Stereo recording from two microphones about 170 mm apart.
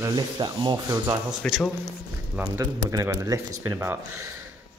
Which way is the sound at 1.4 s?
Centre (ahead or behind).